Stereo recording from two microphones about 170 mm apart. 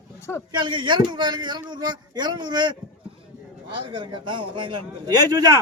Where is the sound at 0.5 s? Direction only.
25° right (ahead or behind).